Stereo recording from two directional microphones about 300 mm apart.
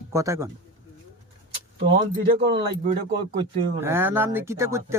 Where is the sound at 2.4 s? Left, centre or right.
Right.